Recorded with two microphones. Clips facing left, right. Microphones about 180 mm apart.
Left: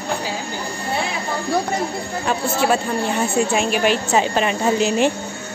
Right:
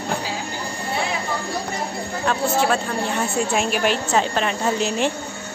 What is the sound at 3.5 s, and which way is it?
A woman's voice, centre (ahead or behind).